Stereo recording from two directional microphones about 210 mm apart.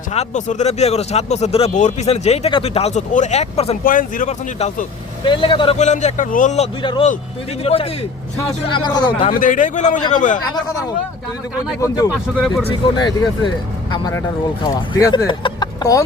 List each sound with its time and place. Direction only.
0.1 s speech: 35° left (ahead or behind)
6.8 s speech: 25° left (ahead or behind)
9.4 s speech: 40° left (ahead or behind)
11.8 s speech: 20° left (ahead or behind)
12.1 s speech: centre (ahead or behind)
12.6 s speech: 20° left (ahead or behind)